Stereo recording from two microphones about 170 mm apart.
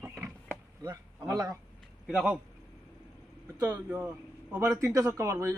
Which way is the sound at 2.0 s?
Centre (ahead or behind).